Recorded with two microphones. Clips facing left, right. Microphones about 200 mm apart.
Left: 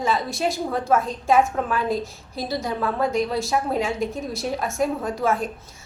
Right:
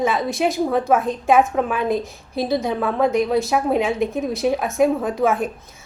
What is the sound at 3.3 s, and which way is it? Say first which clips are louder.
A woman's voice: right 5 dB; 20° right (ahead or behind).